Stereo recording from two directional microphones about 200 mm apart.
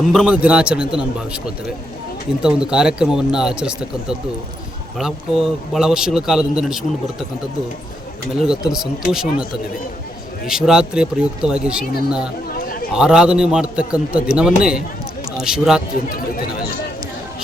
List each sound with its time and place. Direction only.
0.1 s a man's voice: 5° right (ahead or behind)
2.4 s a man's voice: 5° right (ahead or behind)
8.4 s a man's voice: centre (ahead or behind)
10.4 s a man's voice: 5° right (ahead or behind)
12.5 s a sound: 45° left (ahead or behind)
12.9 s a man's voice: 5° right (ahead or behind)
16.0 s speech: 45° left (ahead or behind)